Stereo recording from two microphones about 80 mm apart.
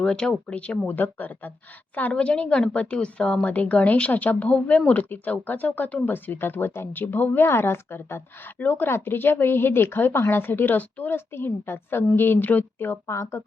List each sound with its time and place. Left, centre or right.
0.0 s a woman's voice: centre; by 13.4 s left